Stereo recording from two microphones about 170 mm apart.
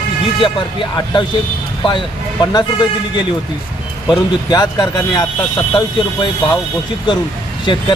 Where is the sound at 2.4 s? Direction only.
25° left (ahead or behind).